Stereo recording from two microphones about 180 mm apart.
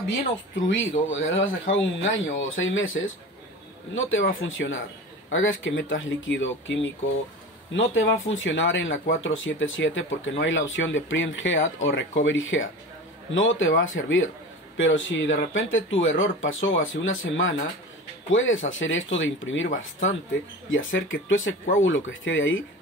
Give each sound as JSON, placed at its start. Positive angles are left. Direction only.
{"t": 0.7, "sound": "speech", "side_deg": 90}
{"t": 20.7, "sound": "speech", "side_deg": 90}